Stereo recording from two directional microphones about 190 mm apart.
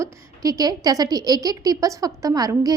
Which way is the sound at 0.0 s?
15° right (ahead or behind).